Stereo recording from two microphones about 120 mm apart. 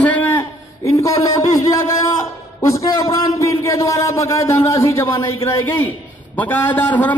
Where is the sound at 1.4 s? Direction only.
70° left (ahead or behind).